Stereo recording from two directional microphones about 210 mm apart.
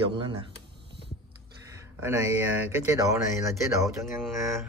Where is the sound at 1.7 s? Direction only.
15° right (ahead or behind).